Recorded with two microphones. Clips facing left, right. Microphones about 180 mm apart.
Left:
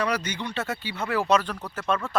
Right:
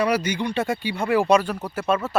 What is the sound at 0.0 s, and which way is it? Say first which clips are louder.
Speech: right 6 dB; 10° right (ahead or behind).